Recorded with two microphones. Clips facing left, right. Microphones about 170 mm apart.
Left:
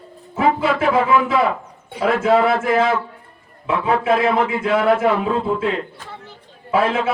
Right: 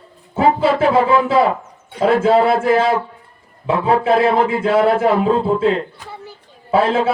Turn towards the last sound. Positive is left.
turn(degrees=-30)  # may be behind; listen again after turning